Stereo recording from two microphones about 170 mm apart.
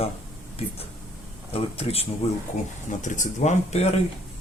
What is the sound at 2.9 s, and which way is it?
Speech, 45° left (ahead or behind).